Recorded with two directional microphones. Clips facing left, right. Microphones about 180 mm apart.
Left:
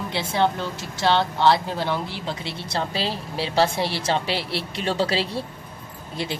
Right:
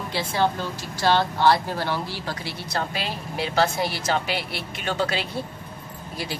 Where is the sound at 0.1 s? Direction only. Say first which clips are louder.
Left 1 dB; 25° left (ahead or behind).